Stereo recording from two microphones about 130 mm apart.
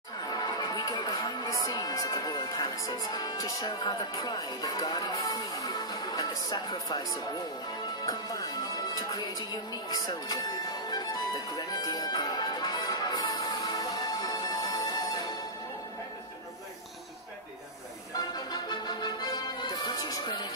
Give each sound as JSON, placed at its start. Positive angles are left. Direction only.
{"t": 0.3, "sound": "music", "side_deg": 30}
{"t": 8.0, "sound": "speech", "side_deg": 30}
{"t": 8.9, "sound": "music", "side_deg": 30}
{"t": 18.3, "sound": "music", "side_deg": 30}